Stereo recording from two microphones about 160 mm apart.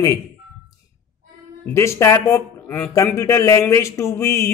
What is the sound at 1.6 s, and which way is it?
Speech, 15° left (ahead or behind).